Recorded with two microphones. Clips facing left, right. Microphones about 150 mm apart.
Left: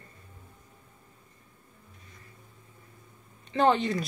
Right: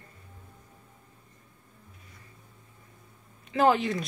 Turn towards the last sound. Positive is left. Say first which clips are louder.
# right 1 dB
turn(degrees=0)  # may be behind; listen again after turning